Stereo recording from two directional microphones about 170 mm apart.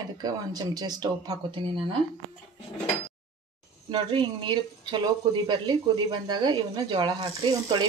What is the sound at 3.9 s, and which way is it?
Speech, 30° right (ahead or behind).